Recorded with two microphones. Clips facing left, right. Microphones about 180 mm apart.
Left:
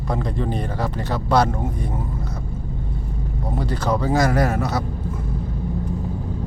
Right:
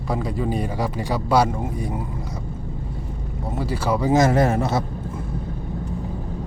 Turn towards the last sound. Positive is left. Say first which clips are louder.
# right 2 dB
turn(degrees=-25)  # may be behind; listen again after turning